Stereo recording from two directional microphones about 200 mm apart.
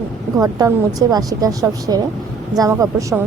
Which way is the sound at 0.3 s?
20° right (ahead or behind).